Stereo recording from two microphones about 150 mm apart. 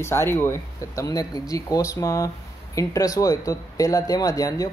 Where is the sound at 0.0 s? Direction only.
15° left (ahead or behind).